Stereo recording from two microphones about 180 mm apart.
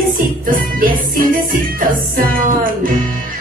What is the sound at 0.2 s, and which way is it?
Music, 50° right (ahead or behind).